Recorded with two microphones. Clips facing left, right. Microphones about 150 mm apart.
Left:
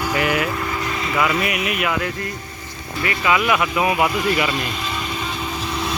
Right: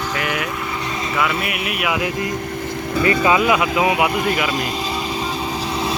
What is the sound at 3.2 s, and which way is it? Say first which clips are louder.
Speech: left 1 dB; 25° right (ahead or behind).